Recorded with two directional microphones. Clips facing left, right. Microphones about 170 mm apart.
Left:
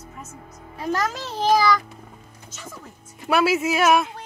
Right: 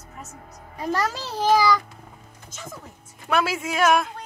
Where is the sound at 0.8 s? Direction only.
10° right (ahead or behind).